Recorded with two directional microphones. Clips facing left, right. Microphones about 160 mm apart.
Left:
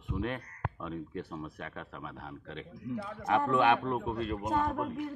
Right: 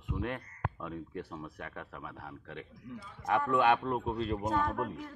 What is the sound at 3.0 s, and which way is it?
Speech, 65° left (ahead or behind).